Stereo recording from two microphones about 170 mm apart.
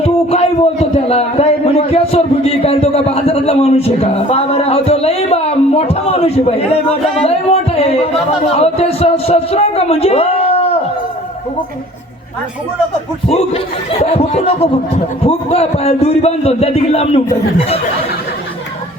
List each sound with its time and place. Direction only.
0.0 s a man's voice: 35° left (ahead or behind)
13.2 s a man's voice: 35° left (ahead or behind)